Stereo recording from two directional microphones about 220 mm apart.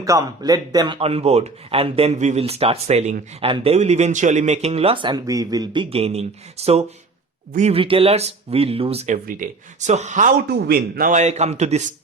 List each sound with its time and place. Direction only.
0.0 s a man's voice: 15° right (ahead or behind)